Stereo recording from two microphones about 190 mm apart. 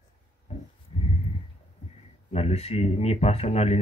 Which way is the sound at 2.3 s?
35° left (ahead or behind).